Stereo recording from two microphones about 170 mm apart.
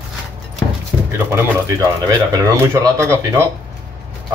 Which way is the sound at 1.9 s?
20° right (ahead or behind).